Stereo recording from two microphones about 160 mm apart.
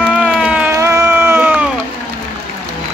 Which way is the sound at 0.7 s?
15° right (ahead or behind).